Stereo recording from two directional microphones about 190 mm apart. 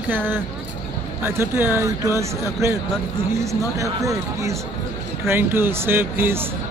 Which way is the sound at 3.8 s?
15° right (ahead or behind).